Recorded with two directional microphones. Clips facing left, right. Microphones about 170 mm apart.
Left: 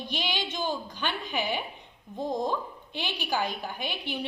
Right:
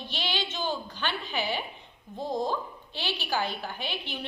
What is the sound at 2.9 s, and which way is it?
A woman's voice, 15° left (ahead or behind).